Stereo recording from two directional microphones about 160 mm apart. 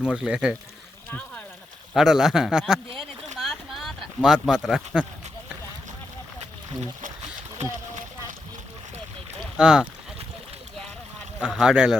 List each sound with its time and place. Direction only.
0.0 s speech: 5° right (ahead or behind)
1.9 s a man's voice: 5° right (ahead or behind)
3.3 s a sound: centre (ahead or behind)
7.6 s speech: 45° right (ahead or behind)
9.4 s boat: 5° right (ahead or behind)
11.4 s a man's voice: 5° right (ahead or behind)